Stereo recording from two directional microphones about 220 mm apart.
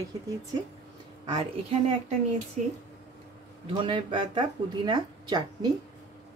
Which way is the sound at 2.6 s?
35° right (ahead or behind).